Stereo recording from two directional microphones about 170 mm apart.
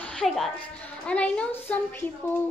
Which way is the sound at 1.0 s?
5° left (ahead or behind).